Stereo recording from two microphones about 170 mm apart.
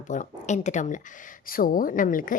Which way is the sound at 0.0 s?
45° left (ahead or behind).